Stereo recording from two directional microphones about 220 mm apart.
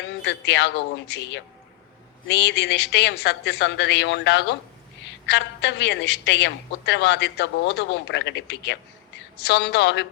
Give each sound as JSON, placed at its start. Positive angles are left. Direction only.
{"t": 0.2, "sound": "a woman's voice", "side_deg": 50}